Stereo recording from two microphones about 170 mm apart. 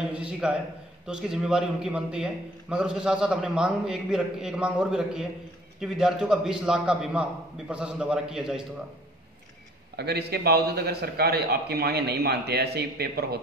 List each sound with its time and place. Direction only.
0.1 s a man's voice: 5° right (ahead or behind)
9.9 s a man's voice: 70° right (ahead or behind)